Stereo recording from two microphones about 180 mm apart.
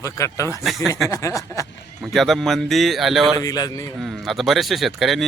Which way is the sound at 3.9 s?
Centre (ahead or behind).